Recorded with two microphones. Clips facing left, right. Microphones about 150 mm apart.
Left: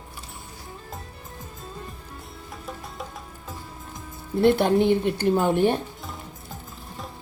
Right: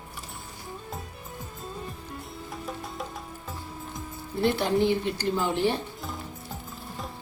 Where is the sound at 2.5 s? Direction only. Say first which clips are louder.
Right 1 dB; centre (ahead or behind).